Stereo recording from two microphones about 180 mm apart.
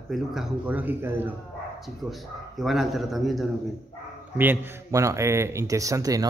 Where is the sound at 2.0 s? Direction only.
Centre (ahead or behind).